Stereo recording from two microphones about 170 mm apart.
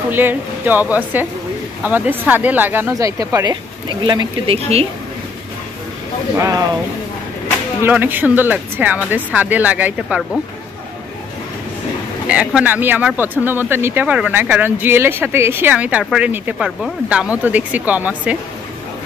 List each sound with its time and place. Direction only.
0.1 s speech: 10° right (ahead or behind); by 4.8 s 35° right (ahead or behind)
6.3 s speech: 15° right (ahead or behind)
7.8 s speech: 10° right (ahead or behind)
12.3 s speech: 5° right (ahead or behind)